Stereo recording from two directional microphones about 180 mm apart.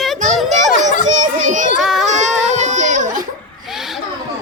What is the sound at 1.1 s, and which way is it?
Children playing, 45° right (ahead or behind).